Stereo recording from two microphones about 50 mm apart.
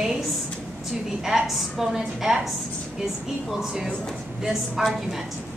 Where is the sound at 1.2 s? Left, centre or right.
Centre.